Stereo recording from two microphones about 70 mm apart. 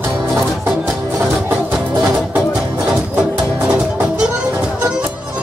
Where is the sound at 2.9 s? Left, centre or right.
Centre.